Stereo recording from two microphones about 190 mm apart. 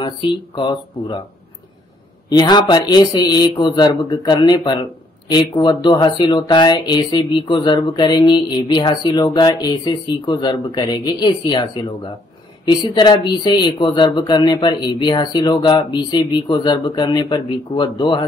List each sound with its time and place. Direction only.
0.0 s speech: 25° left (ahead or behind)
2.2 s speech: 20° left (ahead or behind)